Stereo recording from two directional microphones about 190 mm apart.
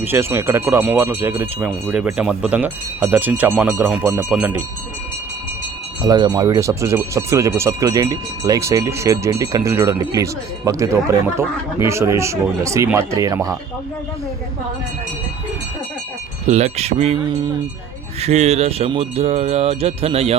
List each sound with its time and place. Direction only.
0.0 s speech: 10° right (ahead or behind)
6.0 s speech: 20° right (ahead or behind)
16.5 s speech: 35° right (ahead or behind)